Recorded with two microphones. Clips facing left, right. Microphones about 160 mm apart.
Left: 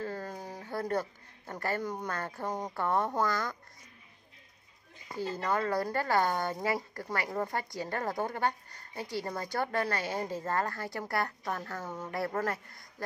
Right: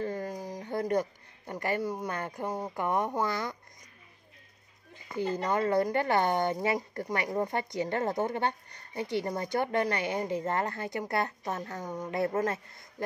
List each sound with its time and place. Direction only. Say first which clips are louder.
0.0 s speech: right 4 dB; 15° right (ahead or behind)
5.1 s speech: right 3 dB; 20° right (ahead or behind)